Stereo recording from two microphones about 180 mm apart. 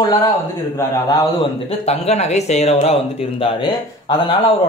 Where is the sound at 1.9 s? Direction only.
35° left (ahead or behind).